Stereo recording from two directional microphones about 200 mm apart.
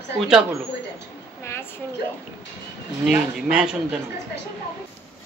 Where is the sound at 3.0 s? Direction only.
5° right (ahead or behind).